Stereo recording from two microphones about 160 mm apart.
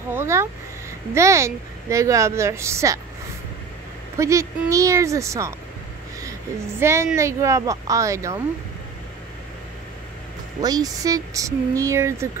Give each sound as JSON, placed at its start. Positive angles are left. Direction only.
{"t": 0.1, "sound": "speech", "side_deg": -15}
{"t": 4.2, "sound": "speech", "side_deg": -20}
{"t": 6.8, "sound": "speech", "side_deg": -15}
{"t": 10.6, "sound": "speech", "side_deg": -25}